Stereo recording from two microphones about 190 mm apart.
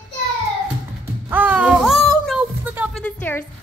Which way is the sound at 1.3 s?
10° right (ahead or behind).